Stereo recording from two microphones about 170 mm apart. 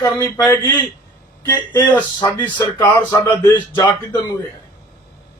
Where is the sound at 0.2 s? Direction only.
20° left (ahead or behind).